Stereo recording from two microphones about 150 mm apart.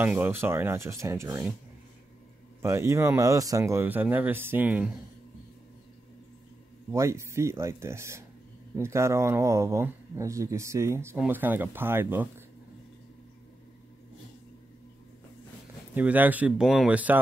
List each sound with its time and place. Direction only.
0.0 s speech: 15° right (ahead or behind)
2.6 s speech: 20° right (ahead or behind)
6.9 s speech: 20° right (ahead or behind)
15.9 s speech: 10° right (ahead or behind)